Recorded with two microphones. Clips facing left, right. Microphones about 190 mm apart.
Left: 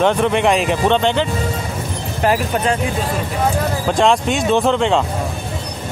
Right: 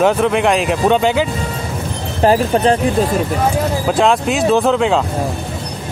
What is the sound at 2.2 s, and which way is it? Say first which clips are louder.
Speech: right 5 dB; 35° right (ahead or behind).